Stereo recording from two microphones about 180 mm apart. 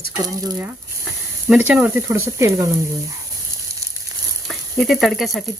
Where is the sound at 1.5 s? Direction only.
5° right (ahead or behind).